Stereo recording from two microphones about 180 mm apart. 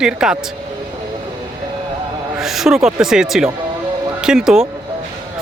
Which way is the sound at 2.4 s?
Centre (ahead or behind).